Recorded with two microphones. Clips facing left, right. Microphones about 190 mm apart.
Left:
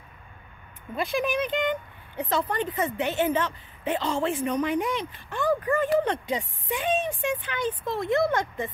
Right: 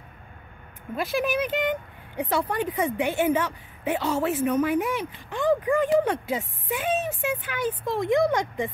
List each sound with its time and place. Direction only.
0.9 s speech: 5° right (ahead or behind)